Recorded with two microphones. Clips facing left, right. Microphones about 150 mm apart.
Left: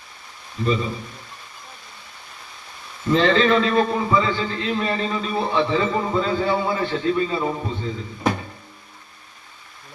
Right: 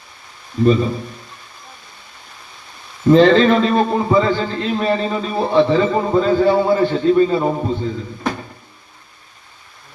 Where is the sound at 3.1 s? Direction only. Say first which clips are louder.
Right 7 dB; 40° right (ahead or behind).